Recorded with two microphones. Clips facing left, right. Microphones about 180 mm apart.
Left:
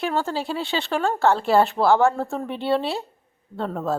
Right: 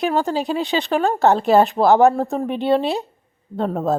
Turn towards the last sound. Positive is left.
turn(degrees=-20)  # may be behind; listen again after turning